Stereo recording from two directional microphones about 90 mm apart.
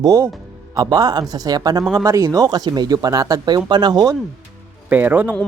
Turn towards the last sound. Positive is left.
turn(degrees=-20)  # may be behind; listen again after turning